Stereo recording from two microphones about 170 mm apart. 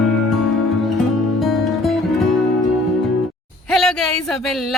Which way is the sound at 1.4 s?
Centre (ahead or behind).